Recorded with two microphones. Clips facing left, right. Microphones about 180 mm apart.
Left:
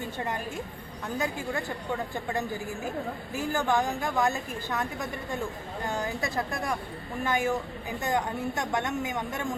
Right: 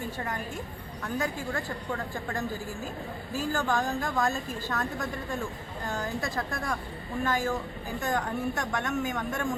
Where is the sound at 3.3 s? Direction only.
20° left (ahead or behind).